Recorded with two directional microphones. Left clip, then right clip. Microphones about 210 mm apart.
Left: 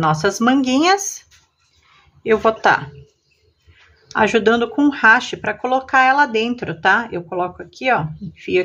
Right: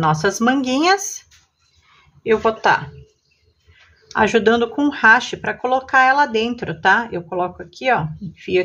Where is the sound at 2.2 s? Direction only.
20° left (ahead or behind).